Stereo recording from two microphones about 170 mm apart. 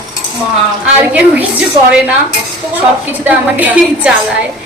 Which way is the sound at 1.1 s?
10° right (ahead or behind).